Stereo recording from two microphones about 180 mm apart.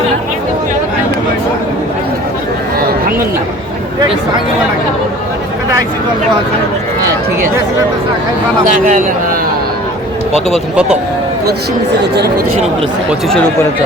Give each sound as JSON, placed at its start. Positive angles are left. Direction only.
{"t": 8.6, "sound": "a man's voice", "side_deg": -45}
{"t": 10.5, "sound": "speech", "side_deg": -5}